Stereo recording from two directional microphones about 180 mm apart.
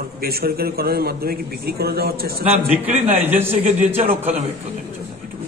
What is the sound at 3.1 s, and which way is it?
Speech, 10° right (ahead or behind).